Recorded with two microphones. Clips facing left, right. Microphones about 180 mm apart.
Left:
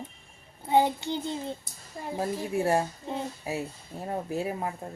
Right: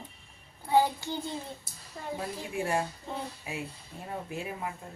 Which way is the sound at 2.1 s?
40° left (ahead or behind).